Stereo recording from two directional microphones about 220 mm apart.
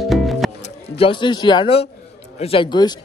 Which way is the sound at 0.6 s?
30° left (ahead or behind).